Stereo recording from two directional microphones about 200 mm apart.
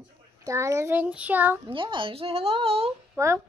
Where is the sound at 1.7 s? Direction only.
25° right (ahead or behind).